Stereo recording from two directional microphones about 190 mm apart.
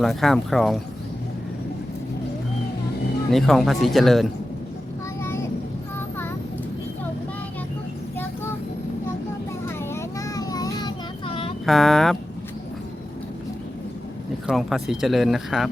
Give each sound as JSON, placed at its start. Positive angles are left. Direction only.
{"t": 0.0, "sound": "speech", "side_deg": 0}
{"t": 3.3, "sound": "speech", "side_deg": 0}
{"t": 5.2, "sound": "vehicle", "side_deg": 10}
{"t": 9.6, "sound": "child singing", "side_deg": 15}
{"t": 11.6, "sound": "speech", "side_deg": 0}
{"t": 14.4, "sound": "speech", "side_deg": 0}